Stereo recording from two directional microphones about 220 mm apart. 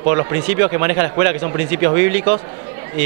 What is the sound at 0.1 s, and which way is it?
A man's voice, 15° right (ahead or behind).